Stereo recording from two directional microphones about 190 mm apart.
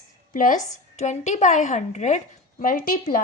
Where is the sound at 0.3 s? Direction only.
45° left (ahead or behind).